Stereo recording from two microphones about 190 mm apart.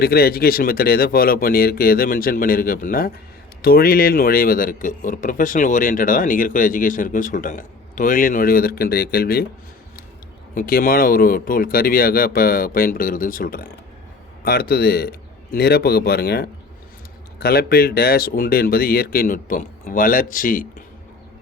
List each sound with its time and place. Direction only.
0.0 s speech: 55° left (ahead or behind)
10.5 s a man's voice: 50° left (ahead or behind)